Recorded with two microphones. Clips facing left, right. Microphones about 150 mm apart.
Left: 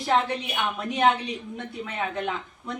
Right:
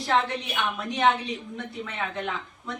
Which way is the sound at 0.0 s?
15° left (ahead or behind).